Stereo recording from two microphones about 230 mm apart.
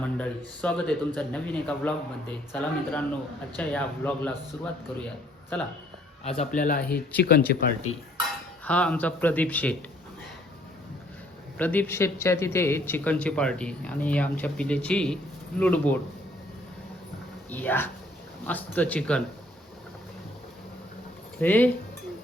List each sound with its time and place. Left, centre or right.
0.0 s a man's voice: centre
6.2 s speech: left
6.6 s speech: left
8.6 s a man's voice: centre
11.5 s a man's voice: centre
17.5 s a man's voice: centre
21.3 s speech: centre